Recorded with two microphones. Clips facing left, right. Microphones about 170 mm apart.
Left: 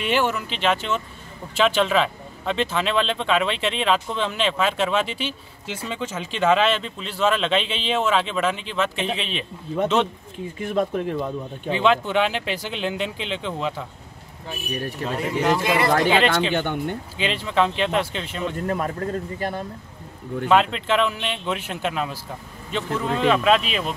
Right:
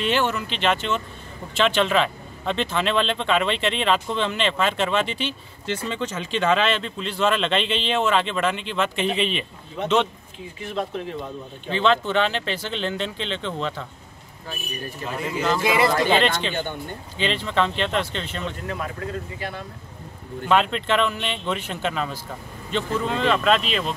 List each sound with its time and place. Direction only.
0.0 s speech: 10° left (ahead or behind)
10.6 s speech: 50° left (ahead or behind)
11.7 s speech: 10° left (ahead or behind)
14.7 s speech: 70° left (ahead or behind)
16.1 s speech: 5° left (ahead or behind)
16.5 s speech: 65° left (ahead or behind)
17.2 s speech: 5° left (ahead or behind)
18.7 s speech: 45° left (ahead or behind)
20.4 s speech: centre (ahead or behind)